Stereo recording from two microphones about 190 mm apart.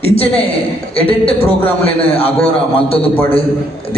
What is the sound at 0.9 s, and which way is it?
A man's voice, 30° left (ahead or behind).